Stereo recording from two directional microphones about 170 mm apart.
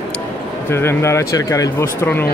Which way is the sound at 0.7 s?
15° left (ahead or behind).